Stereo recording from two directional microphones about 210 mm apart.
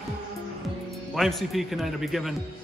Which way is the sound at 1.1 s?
Centre (ahead or behind).